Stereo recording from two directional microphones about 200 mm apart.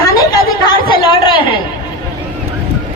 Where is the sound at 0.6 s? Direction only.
25° left (ahead or behind).